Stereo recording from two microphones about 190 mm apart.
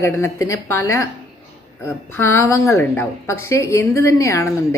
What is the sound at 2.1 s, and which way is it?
A woman's voice, 15° left (ahead or behind).